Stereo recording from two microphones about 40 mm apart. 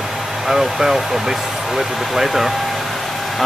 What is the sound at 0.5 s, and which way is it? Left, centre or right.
Speech, centre.